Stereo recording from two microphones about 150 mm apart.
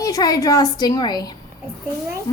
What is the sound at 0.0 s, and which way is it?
A woman's voice, 25° left (ahead or behind).